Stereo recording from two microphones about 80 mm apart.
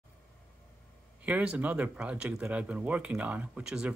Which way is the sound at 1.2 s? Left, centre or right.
Centre.